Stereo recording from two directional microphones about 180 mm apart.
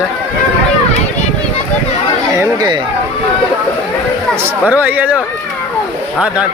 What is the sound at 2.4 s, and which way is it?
Speech, 20° right (ahead or behind).